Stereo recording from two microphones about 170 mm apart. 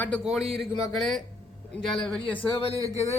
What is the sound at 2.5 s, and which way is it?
Speech, 35° left (ahead or behind).